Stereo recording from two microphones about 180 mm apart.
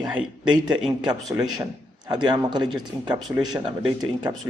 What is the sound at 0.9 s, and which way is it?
Speech, 25° right (ahead or behind).